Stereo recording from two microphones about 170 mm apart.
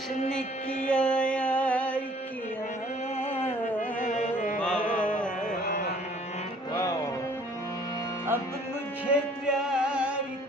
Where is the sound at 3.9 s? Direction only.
45° left (ahead or behind).